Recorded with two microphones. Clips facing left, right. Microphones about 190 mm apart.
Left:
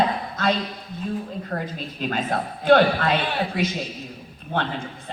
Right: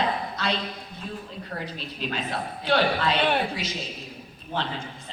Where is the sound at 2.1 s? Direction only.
50° left (ahead or behind).